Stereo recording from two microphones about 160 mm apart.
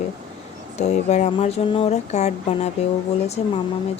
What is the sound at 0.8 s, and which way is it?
Speech, 45° left (ahead or behind).